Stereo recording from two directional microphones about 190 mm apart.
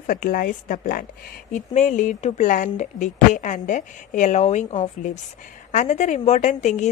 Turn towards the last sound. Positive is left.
turn(degrees=40)  # may be behind; listen again after turning